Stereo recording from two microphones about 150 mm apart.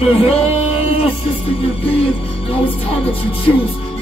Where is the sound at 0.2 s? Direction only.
40° left (ahead or behind).